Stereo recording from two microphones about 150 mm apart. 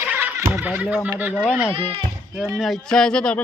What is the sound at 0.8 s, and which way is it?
Speech, 10° right (ahead or behind).